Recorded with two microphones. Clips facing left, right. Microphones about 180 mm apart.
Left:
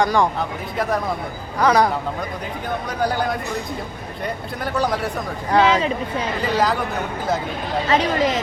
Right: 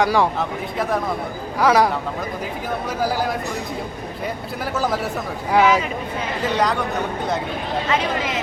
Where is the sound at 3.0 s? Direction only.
5° right (ahead or behind).